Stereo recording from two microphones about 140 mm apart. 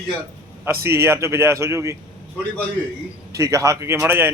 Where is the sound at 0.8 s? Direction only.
20° right (ahead or behind).